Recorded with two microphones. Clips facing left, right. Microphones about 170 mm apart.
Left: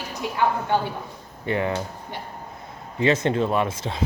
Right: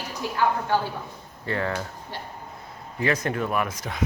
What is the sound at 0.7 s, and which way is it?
Speech, 20° left (ahead or behind).